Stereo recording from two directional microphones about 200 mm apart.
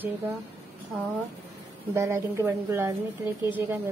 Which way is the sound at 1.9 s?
15° right (ahead or behind).